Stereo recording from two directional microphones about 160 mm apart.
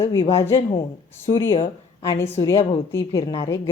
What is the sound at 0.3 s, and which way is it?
Speech, 15° left (ahead or behind).